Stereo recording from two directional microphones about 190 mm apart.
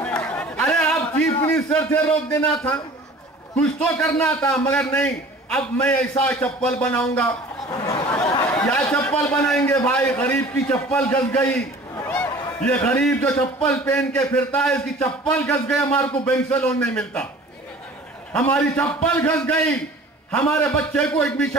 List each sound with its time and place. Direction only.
0.0 s chatter: 10° left (ahead or behind)
1.4 s a sound: 10° left (ahead or behind)
2.0 s speech: 20° left (ahead or behind)
3.5 s a man's voice: 10° left (ahead or behind)
7.9 s a sound: 25° left (ahead or behind)
8.5 s a man's voice: 10° left (ahead or behind)
18.3 s a man's voice: 5° left (ahead or behind)